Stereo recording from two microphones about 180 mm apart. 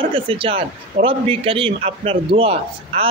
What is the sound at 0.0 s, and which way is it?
A man's voice, 30° right (ahead or behind).